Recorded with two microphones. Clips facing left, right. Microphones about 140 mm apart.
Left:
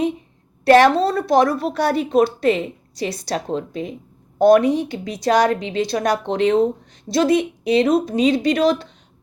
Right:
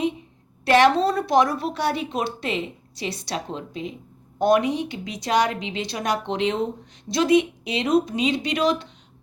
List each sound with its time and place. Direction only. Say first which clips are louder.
0.6 s a woman's voice: left 4 dB; 40° left (ahead or behind)